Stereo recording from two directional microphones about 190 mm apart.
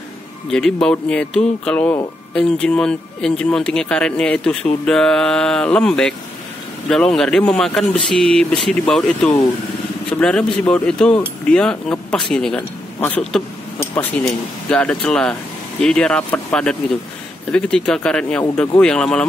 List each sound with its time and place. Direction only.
0.5 s speech: 5° left (ahead or behind)